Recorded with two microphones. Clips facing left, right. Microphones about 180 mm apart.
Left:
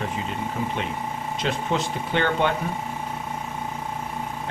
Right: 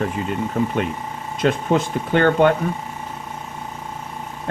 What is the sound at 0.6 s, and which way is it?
Speech, 55° right (ahead or behind).